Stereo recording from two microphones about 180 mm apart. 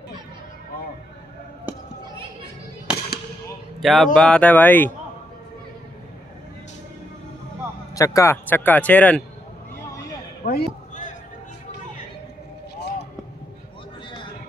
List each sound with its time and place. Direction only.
3.8 s speech: centre (ahead or behind)
7.9 s speech: 20° left (ahead or behind)
10.4 s a sound: 45° left (ahead or behind)